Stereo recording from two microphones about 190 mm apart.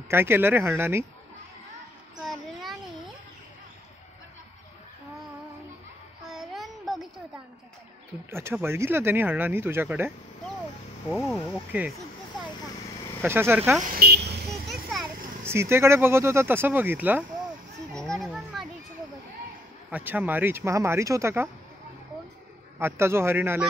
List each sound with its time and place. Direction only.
0.1 s speech: 10° right (ahead or behind)
2.1 s a sound: centre (ahead or behind)
6.3 s a sound: centre (ahead or behind)
8.3 s speech: 15° right (ahead or behind)
13.2 s speech: 10° right (ahead or behind)
13.8 s vehicle: 55° right (ahead or behind)
14.7 s children playing: centre (ahead or behind)
15.4 s speech: 15° right (ahead or behind)
18.2 s children playing: centre (ahead or behind)
19.9 s speech: 10° right (ahead or behind)
22.8 s speech: 15° right (ahead or behind)